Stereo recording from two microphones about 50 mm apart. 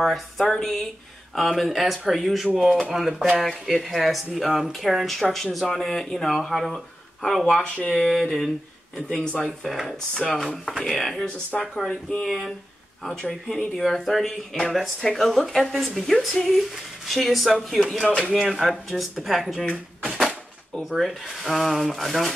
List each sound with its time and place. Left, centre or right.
0.0 s speech: centre
10.9 s speech: centre
12.3 s speech: centre
13.0 s speech: centre
19.6 s speech: centre
20.2 s speech: centre